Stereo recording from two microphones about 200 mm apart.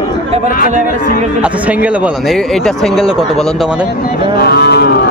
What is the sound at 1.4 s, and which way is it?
Speech, 5° right (ahead or behind).